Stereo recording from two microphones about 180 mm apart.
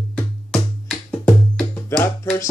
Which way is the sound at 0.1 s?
5° left (ahead or behind).